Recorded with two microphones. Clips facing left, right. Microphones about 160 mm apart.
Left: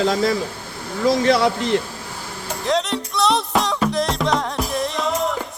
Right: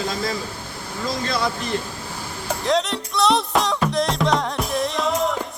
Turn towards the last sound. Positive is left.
turn(degrees=0)  # may be behind; listen again after turning